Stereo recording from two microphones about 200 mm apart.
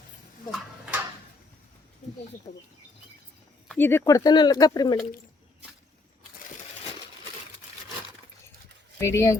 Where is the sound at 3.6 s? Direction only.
10° left (ahead or behind).